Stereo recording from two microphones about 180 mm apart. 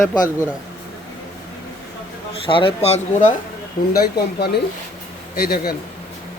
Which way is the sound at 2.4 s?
30° left (ahead or behind).